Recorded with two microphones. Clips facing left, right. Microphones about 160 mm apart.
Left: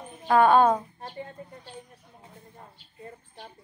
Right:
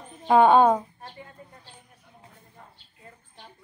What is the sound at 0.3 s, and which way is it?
Speech, 20° right (ahead or behind).